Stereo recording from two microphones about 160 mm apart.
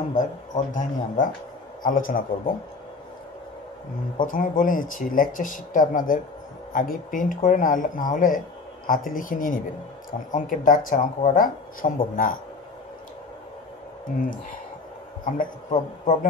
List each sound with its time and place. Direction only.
0.1 s speech: 55° left (ahead or behind)
4.3 s speech: 55° left (ahead or behind)
15.2 s speech: 55° left (ahead or behind)